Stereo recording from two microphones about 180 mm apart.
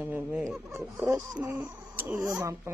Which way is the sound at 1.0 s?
20° right (ahead or behind).